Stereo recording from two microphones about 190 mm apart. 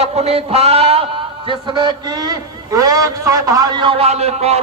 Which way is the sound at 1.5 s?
25° right (ahead or behind).